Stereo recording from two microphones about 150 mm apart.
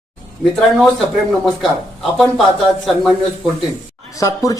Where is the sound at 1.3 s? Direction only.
Centre (ahead or behind).